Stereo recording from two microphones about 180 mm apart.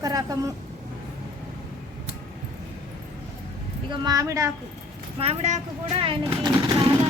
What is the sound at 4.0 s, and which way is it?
Speech, 20° right (ahead or behind).